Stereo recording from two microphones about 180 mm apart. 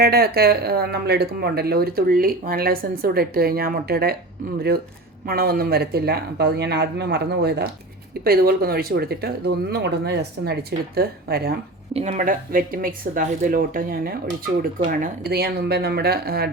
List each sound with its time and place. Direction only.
0.0 s speech: 60° right (ahead or behind)
11.9 s speech: 40° right (ahead or behind); by 16.5 s 60° right (ahead or behind)